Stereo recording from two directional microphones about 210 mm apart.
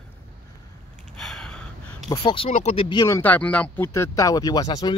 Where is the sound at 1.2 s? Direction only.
5° left (ahead or behind).